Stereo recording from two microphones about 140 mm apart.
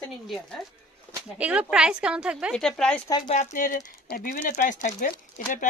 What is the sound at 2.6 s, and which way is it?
Speech, 5° left (ahead or behind).